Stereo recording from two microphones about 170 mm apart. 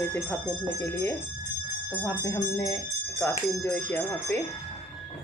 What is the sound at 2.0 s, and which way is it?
Speech, 15° left (ahead or behind).